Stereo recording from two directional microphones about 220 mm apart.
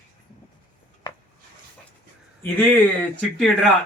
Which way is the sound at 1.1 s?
15° left (ahead or behind).